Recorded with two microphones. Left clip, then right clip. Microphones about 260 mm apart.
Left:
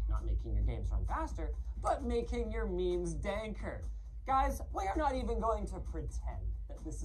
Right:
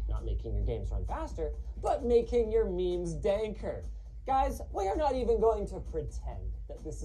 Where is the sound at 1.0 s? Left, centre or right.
Left.